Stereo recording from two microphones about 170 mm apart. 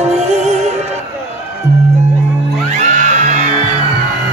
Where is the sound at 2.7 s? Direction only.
45° right (ahead or behind).